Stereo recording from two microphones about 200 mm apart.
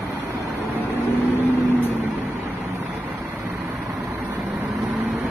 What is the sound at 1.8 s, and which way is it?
Vehicle, 10° right (ahead or behind).